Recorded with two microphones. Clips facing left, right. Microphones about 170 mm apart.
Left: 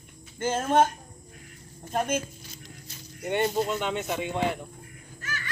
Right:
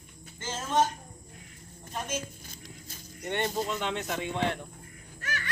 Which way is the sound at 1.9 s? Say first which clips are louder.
Left 8 dB; 60° left (ahead or behind).